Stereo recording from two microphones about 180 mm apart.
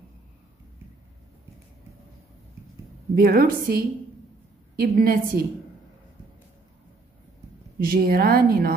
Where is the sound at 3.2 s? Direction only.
55° right (ahead or behind).